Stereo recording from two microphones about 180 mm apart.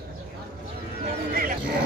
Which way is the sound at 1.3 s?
50° right (ahead or behind).